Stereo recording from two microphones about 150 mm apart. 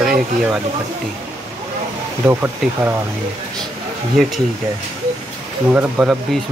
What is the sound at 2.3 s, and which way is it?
Speech, 15° right (ahead or behind).